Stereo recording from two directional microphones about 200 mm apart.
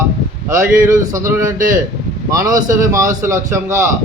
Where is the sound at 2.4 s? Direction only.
40° right (ahead or behind).